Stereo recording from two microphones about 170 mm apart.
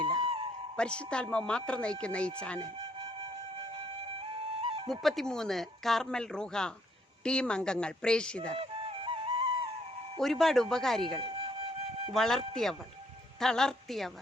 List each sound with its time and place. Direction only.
0.0 s music: 30° right (ahead or behind)
0.8 s speech: 5° left (ahead or behind)
2.6 s flute: 30° right (ahead or behind)
4.9 s speech: centre (ahead or behind)
8.5 s music: 35° right (ahead or behind)
10.2 s speech: centre (ahead or behind)
11.2 s music: 30° right (ahead or behind)
12.1 s speech: centre (ahead or behind)